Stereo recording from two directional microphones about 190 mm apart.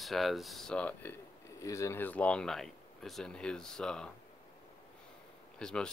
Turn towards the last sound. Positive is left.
turn(degrees=5)  # may be behind; listen again after turning